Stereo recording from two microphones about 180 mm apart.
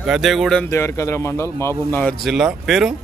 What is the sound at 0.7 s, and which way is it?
A man's voice, 15° left (ahead or behind).